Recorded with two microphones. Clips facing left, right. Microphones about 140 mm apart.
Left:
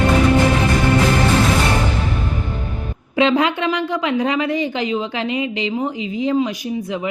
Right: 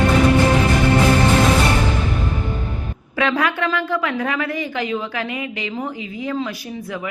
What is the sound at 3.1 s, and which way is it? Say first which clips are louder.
A woman's voice: left 4 dB; 20° left (ahead or behind).